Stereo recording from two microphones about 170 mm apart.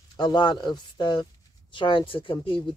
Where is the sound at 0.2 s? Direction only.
25° left (ahead or behind).